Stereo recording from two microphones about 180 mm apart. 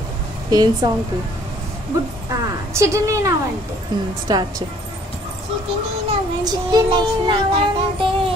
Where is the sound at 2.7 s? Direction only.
15° right (ahead or behind).